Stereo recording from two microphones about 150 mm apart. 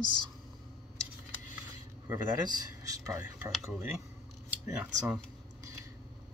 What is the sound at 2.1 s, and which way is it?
Speech, 25° right (ahead or behind).